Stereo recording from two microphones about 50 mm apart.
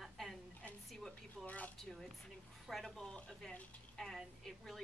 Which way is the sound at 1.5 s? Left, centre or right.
Left.